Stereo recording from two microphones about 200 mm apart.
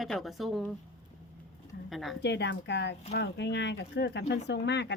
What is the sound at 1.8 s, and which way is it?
Speech, centre (ahead or behind).